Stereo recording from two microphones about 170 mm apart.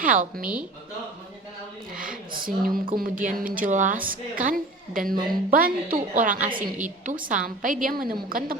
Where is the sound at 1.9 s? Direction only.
55° right (ahead or behind).